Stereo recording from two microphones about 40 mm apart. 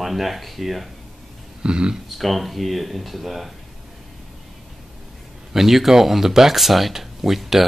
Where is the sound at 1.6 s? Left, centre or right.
Right.